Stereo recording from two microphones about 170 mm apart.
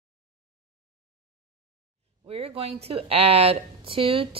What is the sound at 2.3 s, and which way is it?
A woman's voice, 35° right (ahead or behind).